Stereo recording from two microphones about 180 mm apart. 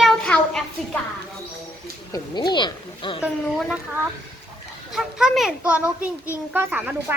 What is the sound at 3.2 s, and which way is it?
Speech, centre (ahead or behind).